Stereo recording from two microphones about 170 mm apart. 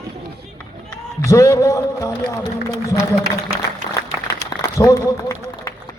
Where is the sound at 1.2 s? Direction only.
15° left (ahead or behind).